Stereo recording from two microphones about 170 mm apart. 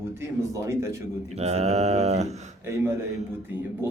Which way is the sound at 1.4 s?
40° right (ahead or behind).